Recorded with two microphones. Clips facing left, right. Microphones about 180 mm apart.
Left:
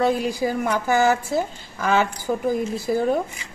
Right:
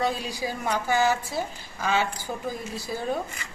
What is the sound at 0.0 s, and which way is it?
A woman's voice, 50° left (ahead or behind).